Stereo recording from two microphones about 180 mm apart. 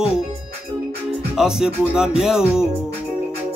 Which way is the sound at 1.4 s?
5° right (ahead or behind).